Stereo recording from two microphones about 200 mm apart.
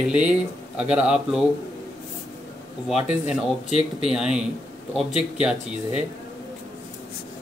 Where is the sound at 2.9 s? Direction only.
5° right (ahead or behind).